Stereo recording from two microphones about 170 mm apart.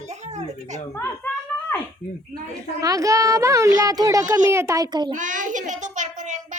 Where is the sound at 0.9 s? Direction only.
10° left (ahead or behind).